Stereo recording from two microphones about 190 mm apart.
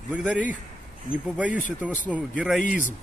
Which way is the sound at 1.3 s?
5° right (ahead or behind).